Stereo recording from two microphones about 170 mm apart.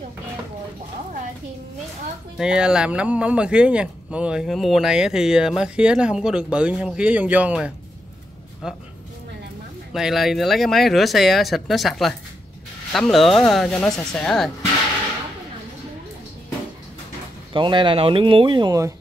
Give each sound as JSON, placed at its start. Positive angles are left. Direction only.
{"t": 2.3, "sound": "speech", "side_deg": -5}
{"t": 9.9, "sound": "speech", "side_deg": 0}
{"t": 17.5, "sound": "speech", "side_deg": -30}